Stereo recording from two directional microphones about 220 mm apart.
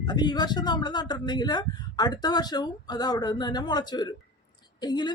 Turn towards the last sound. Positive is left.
turn(degrees=20)  # may be behind; listen again after turning